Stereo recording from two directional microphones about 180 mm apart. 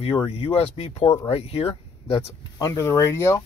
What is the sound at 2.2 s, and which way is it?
Speech, 15° left (ahead or behind).